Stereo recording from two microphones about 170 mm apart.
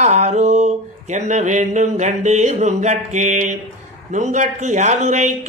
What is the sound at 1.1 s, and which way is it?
Speech, 45° right (ahead or behind).